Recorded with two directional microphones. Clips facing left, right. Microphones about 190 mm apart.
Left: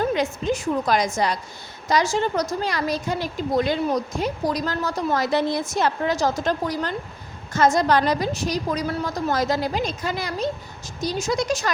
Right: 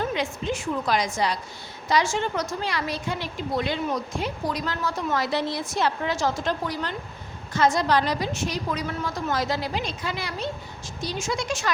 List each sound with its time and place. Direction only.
0.0 s a woman's voice: 40° left (ahead or behind)